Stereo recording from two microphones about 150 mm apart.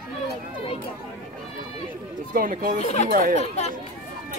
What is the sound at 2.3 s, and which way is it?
Speech, 70° right (ahead or behind).